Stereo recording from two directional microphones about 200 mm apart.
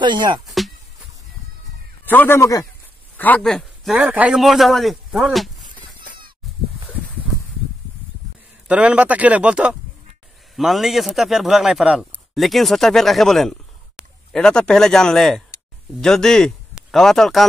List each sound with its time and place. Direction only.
0.0 s speech: 25° right (ahead or behind)
0.5 s a sound: centre (ahead or behind)
2.0 s a man's voice: 10° left (ahead or behind)
8.6 s a man's voice: 5° right (ahead or behind)